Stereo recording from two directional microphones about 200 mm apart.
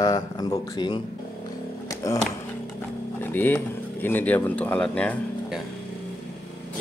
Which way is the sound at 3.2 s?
10° left (ahead or behind).